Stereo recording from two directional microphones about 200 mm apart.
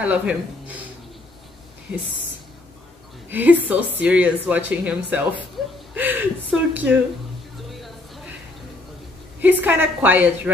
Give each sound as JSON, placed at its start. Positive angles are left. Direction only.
{"t": 0.0, "sound": "speech", "side_deg": -5}
{"t": 3.3, "sound": "a woman's voice", "side_deg": -10}
{"t": 7.7, "sound": "a sound", "side_deg": 0}
{"t": 9.4, "sound": "a woman's voice", "side_deg": -10}